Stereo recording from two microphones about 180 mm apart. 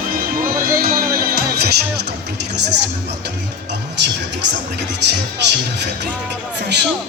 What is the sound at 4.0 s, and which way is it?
Speech, 75° right (ahead or behind).